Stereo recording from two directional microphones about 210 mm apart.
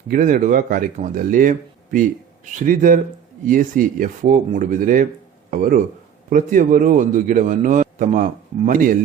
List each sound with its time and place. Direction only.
0.1 s a man's voice: 40° right (ahead or behind)